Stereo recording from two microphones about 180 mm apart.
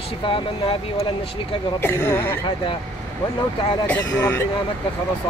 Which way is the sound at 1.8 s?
10° left (ahead or behind).